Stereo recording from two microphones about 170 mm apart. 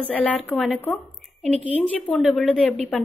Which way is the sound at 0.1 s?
10° left (ahead or behind).